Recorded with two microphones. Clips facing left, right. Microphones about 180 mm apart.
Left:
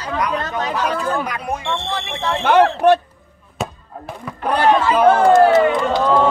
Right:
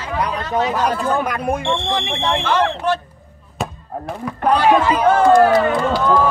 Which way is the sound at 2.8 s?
60° left (ahead or behind).